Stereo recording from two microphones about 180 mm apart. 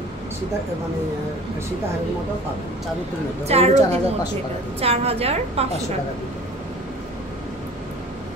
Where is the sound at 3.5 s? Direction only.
35° right (ahead or behind).